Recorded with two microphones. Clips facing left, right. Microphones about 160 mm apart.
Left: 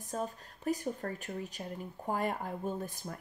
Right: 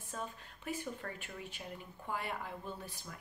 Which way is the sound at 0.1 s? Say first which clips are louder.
Left 7 dB; 40° left (ahead or behind).